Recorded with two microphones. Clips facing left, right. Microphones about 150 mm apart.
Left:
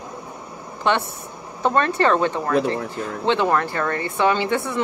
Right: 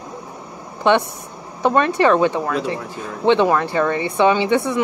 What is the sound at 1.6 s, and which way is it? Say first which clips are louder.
A woman's voice: right 3 dB; 15° right (ahead or behind).